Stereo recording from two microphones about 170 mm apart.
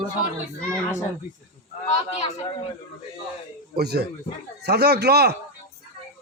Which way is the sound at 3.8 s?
70° right (ahead or behind).